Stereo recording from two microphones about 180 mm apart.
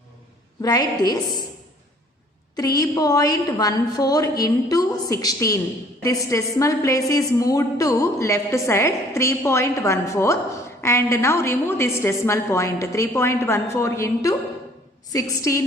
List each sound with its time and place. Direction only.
0.6 s a woman's voice: 20° left (ahead or behind)
2.6 s a woman's voice: 20° left (ahead or behind)